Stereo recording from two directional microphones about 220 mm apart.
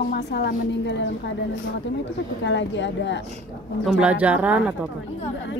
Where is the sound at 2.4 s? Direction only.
55° left (ahead or behind).